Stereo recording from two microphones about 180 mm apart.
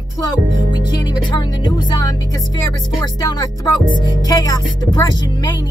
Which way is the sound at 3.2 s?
20° left (ahead or behind).